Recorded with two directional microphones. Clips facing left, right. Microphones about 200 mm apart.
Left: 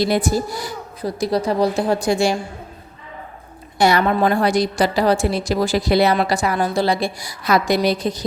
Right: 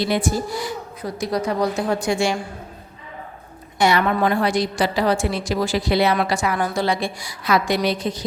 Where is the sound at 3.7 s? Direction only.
35° left (ahead or behind).